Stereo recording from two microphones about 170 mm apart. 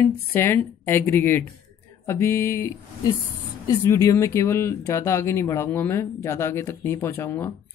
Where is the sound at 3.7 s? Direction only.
20° left (ahead or behind).